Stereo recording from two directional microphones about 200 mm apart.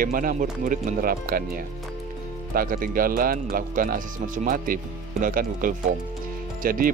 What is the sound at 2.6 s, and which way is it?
Speech, 45° right (ahead or behind).